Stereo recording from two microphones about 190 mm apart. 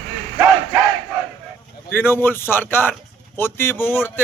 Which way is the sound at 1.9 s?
10° left (ahead or behind).